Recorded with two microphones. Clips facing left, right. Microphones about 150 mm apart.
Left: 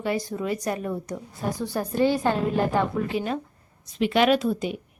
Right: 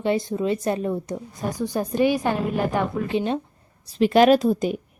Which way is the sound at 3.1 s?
30° right (ahead or behind).